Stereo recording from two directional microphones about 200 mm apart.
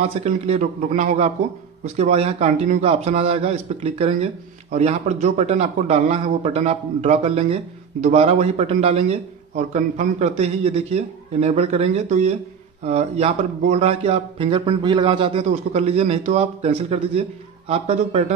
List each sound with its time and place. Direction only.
0.0 s a man's voice: 30° right (ahead or behind)